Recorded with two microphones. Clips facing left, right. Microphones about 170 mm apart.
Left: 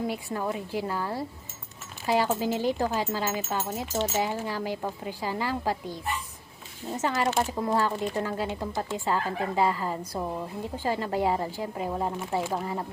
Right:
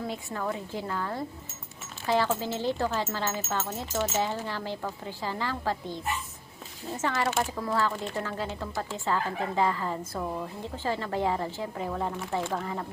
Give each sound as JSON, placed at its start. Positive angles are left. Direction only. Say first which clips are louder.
{"t": 0.1, "sound": "a woman's voice", "louder": "left 2 dB", "side_deg": 15}
{"t": 2.0, "sound": "a woman's voice", "louder": "left 2 dB", "side_deg": 15}